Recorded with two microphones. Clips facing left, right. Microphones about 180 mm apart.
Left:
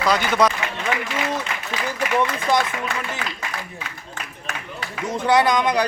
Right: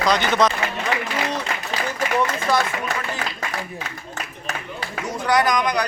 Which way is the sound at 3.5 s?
40° right (ahead or behind).